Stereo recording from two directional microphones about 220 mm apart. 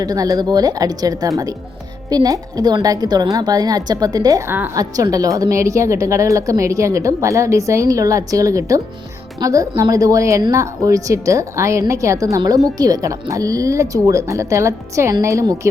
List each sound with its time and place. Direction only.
0.0 s a woman's voice: 15° right (ahead or behind)